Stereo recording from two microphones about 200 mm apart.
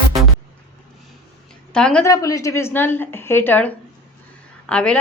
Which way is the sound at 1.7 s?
5° left (ahead or behind).